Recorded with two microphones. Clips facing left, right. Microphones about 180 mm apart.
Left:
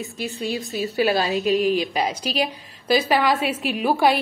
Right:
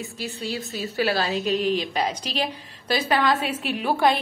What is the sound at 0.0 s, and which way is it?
A woman's voice, 15° left (ahead or behind).